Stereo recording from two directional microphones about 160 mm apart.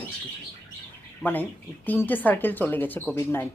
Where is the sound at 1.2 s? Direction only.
10° left (ahead or behind).